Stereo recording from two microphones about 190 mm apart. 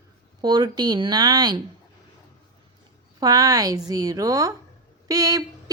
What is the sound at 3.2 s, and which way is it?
A woman's voice, 20° right (ahead or behind).